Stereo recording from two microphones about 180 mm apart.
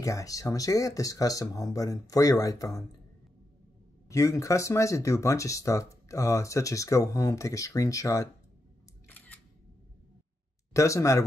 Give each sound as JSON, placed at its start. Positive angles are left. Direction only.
{"t": 0.0, "sound": "speech", "side_deg": 20}
{"t": 4.1, "sound": "speech", "side_deg": 15}
{"t": 10.7, "sound": "speech", "side_deg": 15}